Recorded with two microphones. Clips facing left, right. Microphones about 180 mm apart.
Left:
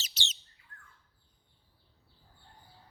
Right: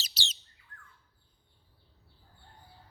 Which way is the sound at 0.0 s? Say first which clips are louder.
Right 1 dB; 35° right (ahead or behind).